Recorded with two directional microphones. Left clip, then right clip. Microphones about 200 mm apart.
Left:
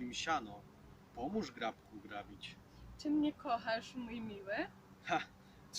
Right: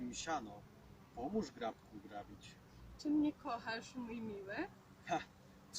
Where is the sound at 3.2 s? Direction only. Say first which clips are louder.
Left 3 dB; 15° left (ahead or behind).